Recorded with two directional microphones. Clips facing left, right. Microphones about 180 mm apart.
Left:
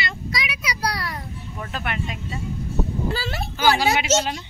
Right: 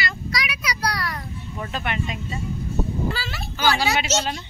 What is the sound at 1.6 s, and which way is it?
Speech, centre (ahead or behind).